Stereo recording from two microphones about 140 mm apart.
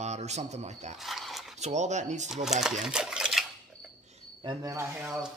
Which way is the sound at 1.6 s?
55° right (ahead or behind).